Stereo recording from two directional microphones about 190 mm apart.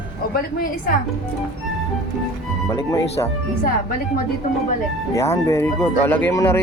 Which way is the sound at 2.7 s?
15° left (ahead or behind).